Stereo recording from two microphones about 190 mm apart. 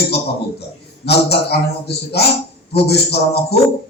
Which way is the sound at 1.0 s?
60° left (ahead or behind).